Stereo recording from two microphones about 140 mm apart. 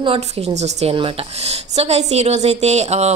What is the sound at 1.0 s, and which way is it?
Speech, 40° right (ahead or behind).